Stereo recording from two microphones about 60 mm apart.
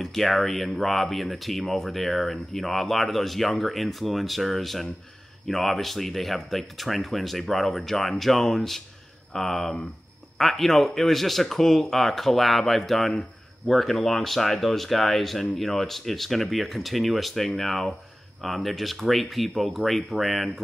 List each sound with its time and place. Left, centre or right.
0.0 s speech: centre